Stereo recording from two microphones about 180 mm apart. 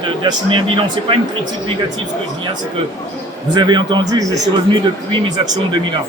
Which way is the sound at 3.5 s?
25° right (ahead or behind).